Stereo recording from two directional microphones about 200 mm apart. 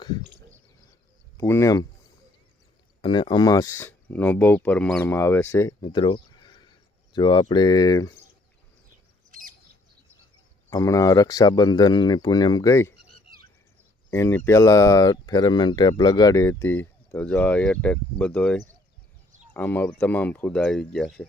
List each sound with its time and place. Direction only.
1.4 s speech: 15° left (ahead or behind)
3.0 s speech: 25° left (ahead or behind)
9.3 s bird: 45° right (ahead or behind)
10.7 s speech: 15° left (ahead or behind)
14.1 s speech: 10° left (ahead or behind)